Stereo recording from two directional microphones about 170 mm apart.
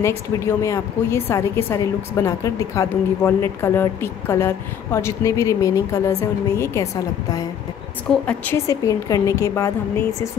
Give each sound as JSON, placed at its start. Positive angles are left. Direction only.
{"t": 0.0, "sound": "a woman's voice", "side_deg": 15}